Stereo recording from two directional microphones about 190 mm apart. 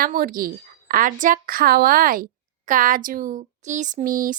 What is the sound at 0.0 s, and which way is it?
Speech, 50° right (ahead or behind).